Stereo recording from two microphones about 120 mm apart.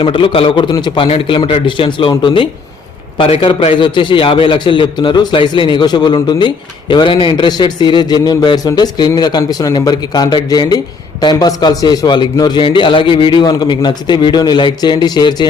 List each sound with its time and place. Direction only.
0.0 s a man's voice: 45° left (ahead or behind)